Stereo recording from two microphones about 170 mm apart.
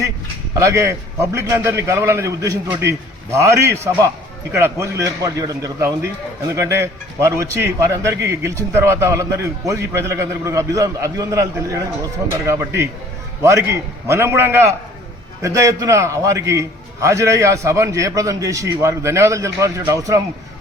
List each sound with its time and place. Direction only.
0.5 s a man's voice: 15° right (ahead or behind)